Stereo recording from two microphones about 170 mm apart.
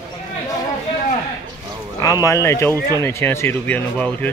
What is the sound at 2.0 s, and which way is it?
Speech, 20° left (ahead or behind).